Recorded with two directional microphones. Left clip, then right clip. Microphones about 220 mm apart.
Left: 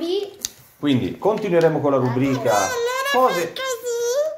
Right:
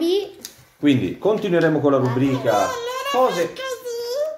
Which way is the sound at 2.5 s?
45° left (ahead or behind).